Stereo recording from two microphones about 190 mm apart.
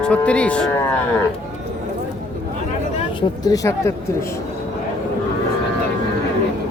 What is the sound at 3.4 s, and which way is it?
Moo, 15° left (ahead or behind).